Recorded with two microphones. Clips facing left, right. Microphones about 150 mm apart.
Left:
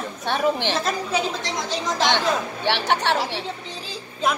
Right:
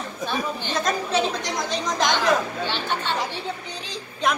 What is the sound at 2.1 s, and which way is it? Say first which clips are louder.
Speech: right 2 dB; 70° left (ahead or behind).